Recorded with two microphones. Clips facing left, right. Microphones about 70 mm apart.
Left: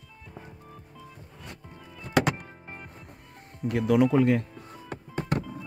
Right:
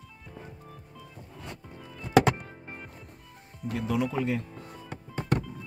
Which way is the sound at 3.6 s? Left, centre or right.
Left.